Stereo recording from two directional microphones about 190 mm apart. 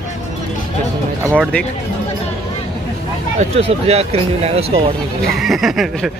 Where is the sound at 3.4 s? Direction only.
35° right (ahead or behind).